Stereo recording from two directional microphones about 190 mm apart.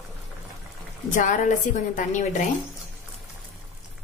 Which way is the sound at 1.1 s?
40° left (ahead or behind).